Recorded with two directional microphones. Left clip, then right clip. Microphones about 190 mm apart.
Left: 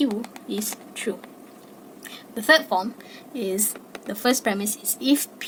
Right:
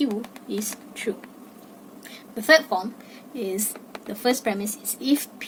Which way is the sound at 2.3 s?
25° left (ahead or behind).